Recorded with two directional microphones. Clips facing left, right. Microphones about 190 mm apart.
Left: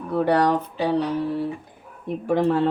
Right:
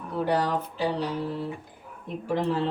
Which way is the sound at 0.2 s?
65° left (ahead or behind).